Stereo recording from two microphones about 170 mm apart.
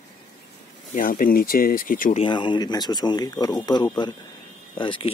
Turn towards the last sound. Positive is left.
turn(degrees=30)  # may be behind; listen again after turning